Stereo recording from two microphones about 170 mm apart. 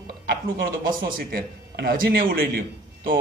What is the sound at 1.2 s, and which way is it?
Speech, 60° right (ahead or behind).